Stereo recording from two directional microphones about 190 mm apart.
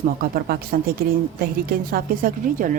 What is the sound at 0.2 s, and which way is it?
Speech, 50° right (ahead or behind).